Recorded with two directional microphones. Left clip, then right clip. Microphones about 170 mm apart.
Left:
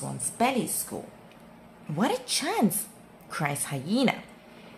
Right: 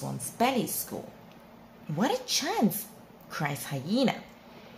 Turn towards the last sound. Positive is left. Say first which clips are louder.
# left 2 dB
turn(degrees=25)  # may be behind; listen again after turning